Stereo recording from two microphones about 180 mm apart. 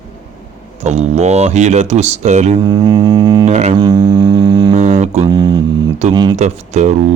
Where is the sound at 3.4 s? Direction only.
40° right (ahead or behind).